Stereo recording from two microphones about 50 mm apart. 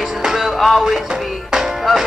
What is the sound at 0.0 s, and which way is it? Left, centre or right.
Music, centre.